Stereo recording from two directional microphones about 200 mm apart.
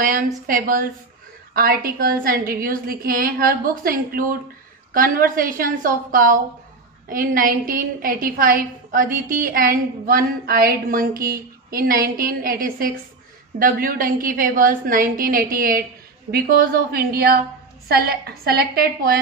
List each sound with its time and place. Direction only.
0.0 s a woman's voice: 40° right (ahead or behind)